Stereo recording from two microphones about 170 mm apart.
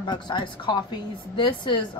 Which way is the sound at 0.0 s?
25° left (ahead or behind).